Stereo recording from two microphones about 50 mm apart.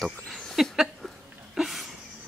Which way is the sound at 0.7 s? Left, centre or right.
Centre.